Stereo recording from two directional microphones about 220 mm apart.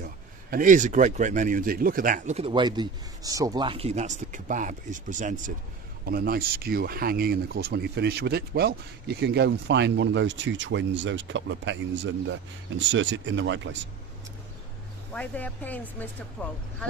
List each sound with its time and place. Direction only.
0.5 s speech: 35° right (ahead or behind); by 13.7 s 55° right (ahead or behind)
15.1 s speech: 5° left (ahead or behind)